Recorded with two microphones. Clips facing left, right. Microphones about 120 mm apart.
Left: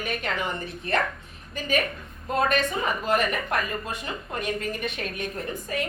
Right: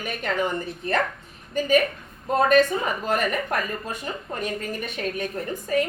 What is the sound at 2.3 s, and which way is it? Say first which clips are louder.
Speech: right 6 dB; 45° right (ahead or behind).